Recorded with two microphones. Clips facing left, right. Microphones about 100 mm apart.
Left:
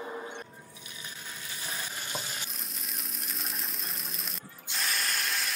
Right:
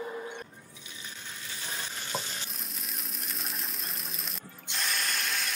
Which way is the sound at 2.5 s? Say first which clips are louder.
Even; centre (ahead or behind).